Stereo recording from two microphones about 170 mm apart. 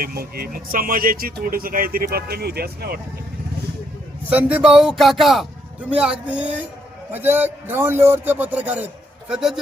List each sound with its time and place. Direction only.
0.0 s speech: 65° right (ahead or behind)
4.3 s a man's voice: 10° right (ahead or behind)